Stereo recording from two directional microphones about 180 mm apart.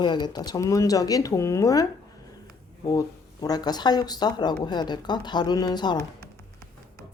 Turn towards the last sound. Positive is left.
turn(degrees=25)  # may be behind; listen again after turning